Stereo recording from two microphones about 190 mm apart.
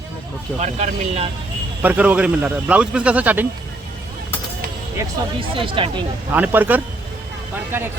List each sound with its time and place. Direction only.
0.6 s speech: 35° right (ahead or behind)
1.8 s speech: 10° right (ahead or behind)
5.5 s speech: 25° right (ahead or behind)
6.3 s speech: 10° right (ahead or behind)